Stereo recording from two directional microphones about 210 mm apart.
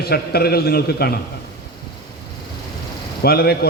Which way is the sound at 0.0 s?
50° left (ahead or behind).